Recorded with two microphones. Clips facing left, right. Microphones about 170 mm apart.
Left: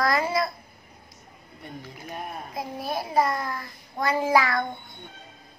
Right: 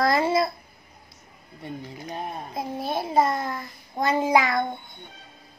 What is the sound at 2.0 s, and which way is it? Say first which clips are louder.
A child's voice: right 2 dB; 30° right (ahead or behind).